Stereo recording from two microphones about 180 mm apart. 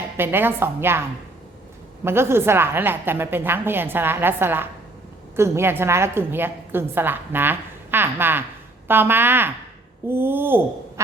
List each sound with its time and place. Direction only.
0.2 s a woman's voice: 10° right (ahead or behind)
2.0 s a woman's voice: 15° right (ahead or behind)